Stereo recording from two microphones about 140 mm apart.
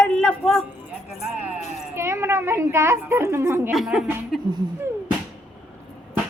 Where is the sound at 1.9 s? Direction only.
20° right (ahead or behind).